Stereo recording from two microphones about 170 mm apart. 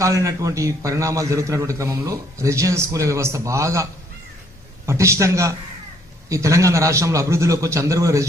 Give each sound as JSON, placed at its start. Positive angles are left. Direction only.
{"t": 0.0, "sound": "a man's voice", "side_deg": -20}